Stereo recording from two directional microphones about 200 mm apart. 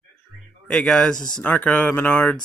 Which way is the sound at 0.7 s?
Centre (ahead or behind).